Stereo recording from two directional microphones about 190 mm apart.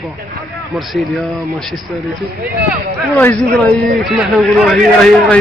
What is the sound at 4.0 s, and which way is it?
A man's voice, centre (ahead or behind).